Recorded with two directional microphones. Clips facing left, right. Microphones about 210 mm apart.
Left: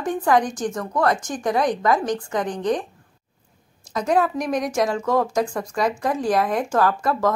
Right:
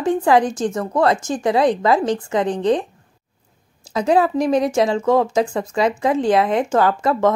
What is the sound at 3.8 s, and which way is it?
Speech, 30° right (ahead or behind).